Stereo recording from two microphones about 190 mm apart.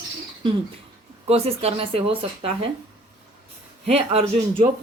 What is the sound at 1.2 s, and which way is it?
Speech, 30° right (ahead or behind).